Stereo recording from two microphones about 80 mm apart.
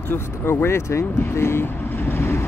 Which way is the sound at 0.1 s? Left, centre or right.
Left.